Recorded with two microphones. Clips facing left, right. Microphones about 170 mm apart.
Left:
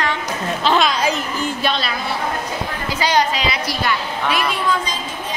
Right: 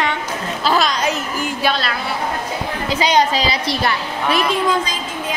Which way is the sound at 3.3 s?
30° right (ahead or behind).